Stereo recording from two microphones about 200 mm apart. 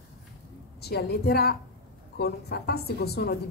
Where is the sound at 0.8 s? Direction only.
55° left (ahead or behind).